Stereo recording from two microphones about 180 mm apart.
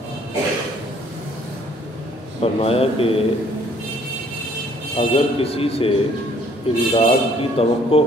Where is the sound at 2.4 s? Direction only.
35° left (ahead or behind).